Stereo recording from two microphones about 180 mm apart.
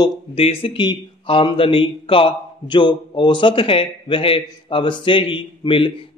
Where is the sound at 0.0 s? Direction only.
30° left (ahead or behind).